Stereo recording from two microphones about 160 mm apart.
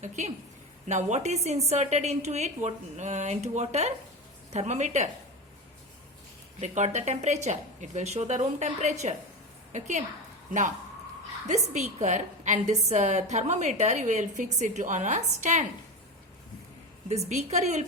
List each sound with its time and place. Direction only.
0.9 s a woman's voice: 45° right (ahead or behind)
6.6 s a woman's voice: 45° right (ahead or behind)
11.4 s a woman's voice: 45° right (ahead or behind)
17.1 s a woman's voice: 45° right (ahead or behind)